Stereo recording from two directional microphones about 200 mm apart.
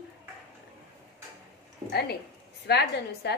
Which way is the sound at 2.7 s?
55° left (ahead or behind).